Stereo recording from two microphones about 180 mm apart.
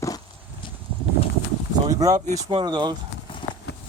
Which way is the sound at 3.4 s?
25° left (ahead or behind).